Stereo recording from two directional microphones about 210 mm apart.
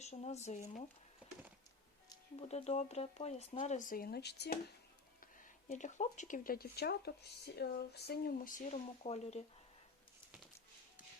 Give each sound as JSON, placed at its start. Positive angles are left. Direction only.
{"t": 0.0, "sound": "speech", "side_deg": 30}
{"t": 2.0, "sound": "speech", "side_deg": 30}
{"t": 5.2, "sound": "speech", "side_deg": 40}